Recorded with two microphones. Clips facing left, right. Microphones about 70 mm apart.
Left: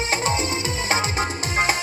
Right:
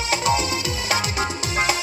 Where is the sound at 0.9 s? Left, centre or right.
Left.